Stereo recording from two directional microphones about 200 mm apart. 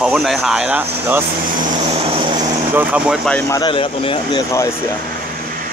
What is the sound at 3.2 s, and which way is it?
Speech, 10° left (ahead or behind).